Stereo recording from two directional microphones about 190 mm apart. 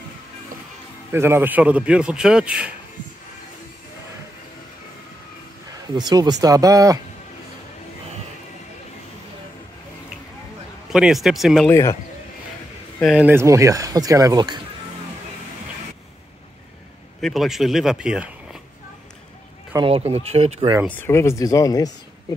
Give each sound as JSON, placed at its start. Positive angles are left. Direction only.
{"t": 1.1, "sound": "a man's voice", "side_deg": -15}
{"t": 5.9, "sound": "speech", "side_deg": -20}
{"t": 10.9, "sound": "a man's voice", "side_deg": 0}
{"t": 11.7, "sound": "speech", "side_deg": 15}
{"t": 13.0, "sound": "speech", "side_deg": -5}
{"t": 17.2, "sound": "speech", "side_deg": 0}
{"t": 19.7, "sound": "speech", "side_deg": -30}
{"t": 20.9, "sound": "speech", "side_deg": 10}